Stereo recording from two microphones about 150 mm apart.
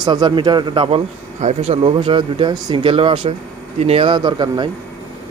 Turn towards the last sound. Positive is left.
turn(degrees=-30)  # may be behind; listen again after turning